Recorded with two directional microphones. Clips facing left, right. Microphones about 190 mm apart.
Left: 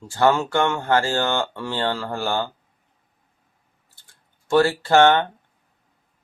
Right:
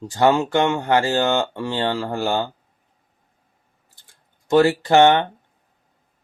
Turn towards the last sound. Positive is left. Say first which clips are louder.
# right 1 dB
turn(degrees=-20)  # may be behind; listen again after turning